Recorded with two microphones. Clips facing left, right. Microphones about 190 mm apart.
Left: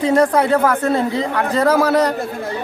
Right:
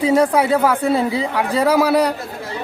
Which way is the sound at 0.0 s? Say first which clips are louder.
Even; 10° right (ahead or behind).